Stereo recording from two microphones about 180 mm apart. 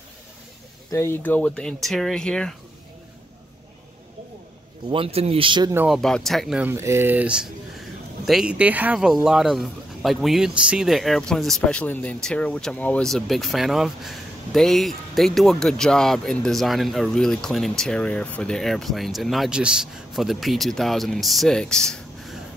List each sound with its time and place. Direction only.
0.9 s speech: 15° left (ahead or behind)
4.8 s speech: 30° right (ahead or behind)
5.9 s speech: centre (ahead or behind)
6.7 s speech: 15° right (ahead or behind); by 22.4 s centre (ahead or behind)